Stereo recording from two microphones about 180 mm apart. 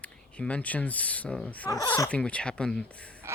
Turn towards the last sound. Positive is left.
turn(degrees=5)  # may be behind; listen again after turning